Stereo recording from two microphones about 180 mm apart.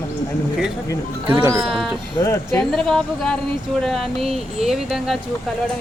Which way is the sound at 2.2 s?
15° left (ahead or behind).